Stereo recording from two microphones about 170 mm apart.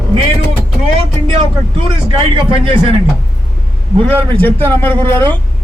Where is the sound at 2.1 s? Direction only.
30° right (ahead or behind).